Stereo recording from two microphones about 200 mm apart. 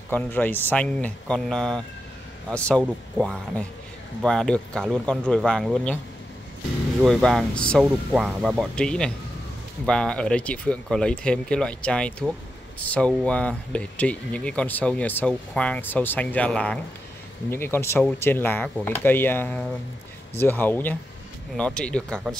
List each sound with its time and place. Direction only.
0.1 s speech: 10° left (ahead or behind)
7.0 s speech: centre (ahead or behind)